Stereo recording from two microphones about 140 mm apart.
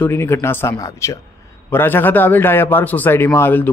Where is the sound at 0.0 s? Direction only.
15° left (ahead or behind).